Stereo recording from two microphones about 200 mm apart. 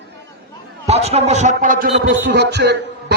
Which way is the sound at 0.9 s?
30° right (ahead or behind).